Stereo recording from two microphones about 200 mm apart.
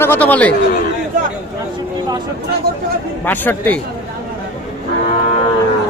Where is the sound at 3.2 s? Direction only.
10° left (ahead or behind).